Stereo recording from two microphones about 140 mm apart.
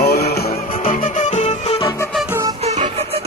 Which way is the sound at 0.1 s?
90° left.